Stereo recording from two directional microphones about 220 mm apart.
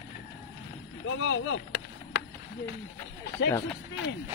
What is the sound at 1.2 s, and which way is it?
Speech, 60° left (ahead or behind).